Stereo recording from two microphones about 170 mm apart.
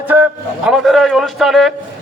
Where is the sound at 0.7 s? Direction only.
Centre (ahead or behind).